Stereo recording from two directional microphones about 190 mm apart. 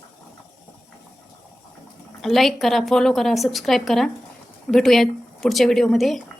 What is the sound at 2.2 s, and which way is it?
A woman's voice, centre (ahead or behind).